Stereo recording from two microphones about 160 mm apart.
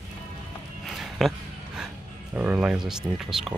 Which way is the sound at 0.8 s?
Centre (ahead or behind).